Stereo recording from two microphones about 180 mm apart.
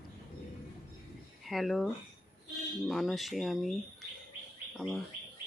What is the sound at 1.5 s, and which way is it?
Speech, centre (ahead or behind).